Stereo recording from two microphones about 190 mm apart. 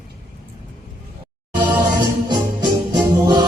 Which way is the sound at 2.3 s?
25° right (ahead or behind).